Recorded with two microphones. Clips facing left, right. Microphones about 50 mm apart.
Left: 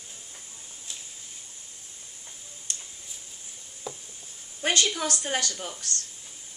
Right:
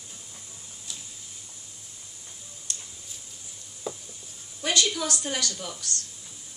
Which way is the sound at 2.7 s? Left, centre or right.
Left.